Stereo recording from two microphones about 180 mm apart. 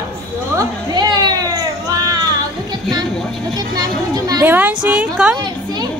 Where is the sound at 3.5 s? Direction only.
20° right (ahead or behind).